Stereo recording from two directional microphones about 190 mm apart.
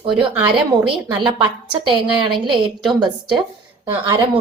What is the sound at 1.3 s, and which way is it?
A woman's voice, 25° right (ahead or behind).